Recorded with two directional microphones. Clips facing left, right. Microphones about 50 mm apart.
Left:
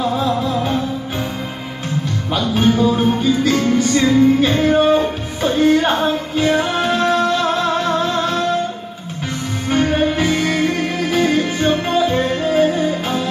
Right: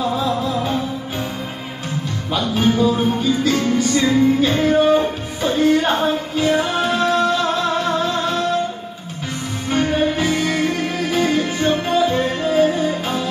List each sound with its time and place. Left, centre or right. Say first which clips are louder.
2.3 s music: left 2 dB; left
9.7 s music: left 2 dB; left